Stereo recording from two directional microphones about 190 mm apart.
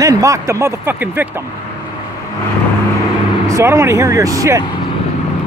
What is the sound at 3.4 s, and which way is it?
Speech, 15° right (ahead or behind).